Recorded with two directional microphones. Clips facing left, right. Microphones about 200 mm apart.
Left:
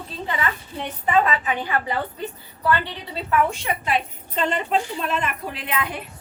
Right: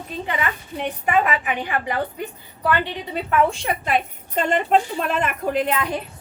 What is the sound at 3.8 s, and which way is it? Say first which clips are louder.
A woman's voice: right 2 dB; 45° right (ahead or behind).